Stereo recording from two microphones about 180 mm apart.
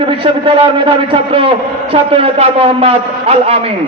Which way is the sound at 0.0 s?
30° right (ahead or behind).